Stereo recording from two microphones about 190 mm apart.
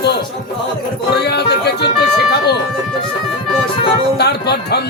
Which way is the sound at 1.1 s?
60° left (ahead or behind).